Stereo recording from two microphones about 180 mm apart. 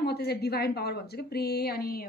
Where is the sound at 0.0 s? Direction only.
65° left (ahead or behind).